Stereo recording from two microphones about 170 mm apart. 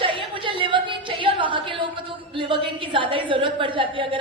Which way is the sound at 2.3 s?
30° right (ahead or behind).